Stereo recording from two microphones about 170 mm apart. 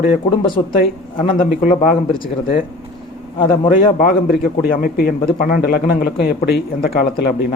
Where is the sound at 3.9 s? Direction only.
55° left (ahead or behind).